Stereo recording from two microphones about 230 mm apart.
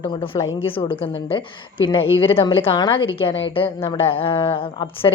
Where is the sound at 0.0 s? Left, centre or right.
Centre.